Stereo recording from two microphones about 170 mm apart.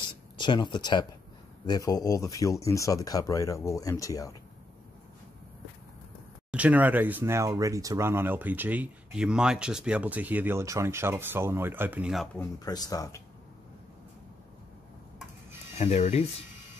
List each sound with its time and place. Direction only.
0.4 s speech: 30° left (ahead or behind)
6.5 s speech: 10° right (ahead or behind)
12.5 s speech: 20° left (ahead or behind)
15.8 s speech: 40° left (ahead or behind)